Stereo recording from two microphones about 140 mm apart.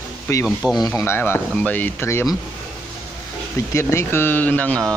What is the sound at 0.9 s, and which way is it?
Speech, 15° left (ahead or behind).